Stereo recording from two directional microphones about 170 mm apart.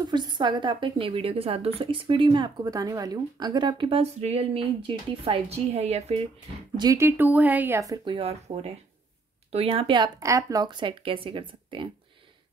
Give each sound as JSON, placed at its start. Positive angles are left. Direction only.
{"t": 0.0, "sound": "a woman's voice", "side_deg": -25}
{"t": 6.8, "sound": "speech", "side_deg": -20}